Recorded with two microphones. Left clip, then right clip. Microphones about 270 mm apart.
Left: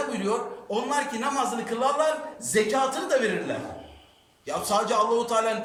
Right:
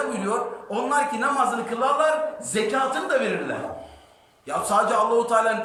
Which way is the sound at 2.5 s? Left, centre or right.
Left.